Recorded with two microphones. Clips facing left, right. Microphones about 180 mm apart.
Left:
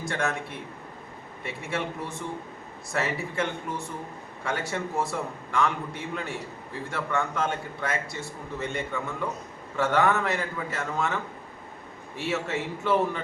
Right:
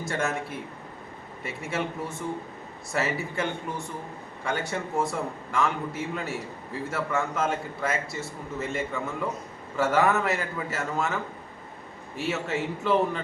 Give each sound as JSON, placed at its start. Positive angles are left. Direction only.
{"t": 0.0, "sound": "a man's voice", "side_deg": 0}